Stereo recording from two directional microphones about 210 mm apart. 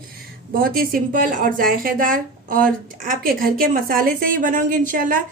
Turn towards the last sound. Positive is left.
turn(degrees=-40)  # may be behind; listen again after turning